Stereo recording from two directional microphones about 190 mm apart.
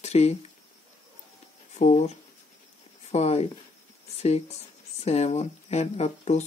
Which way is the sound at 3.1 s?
35° left (ahead or behind).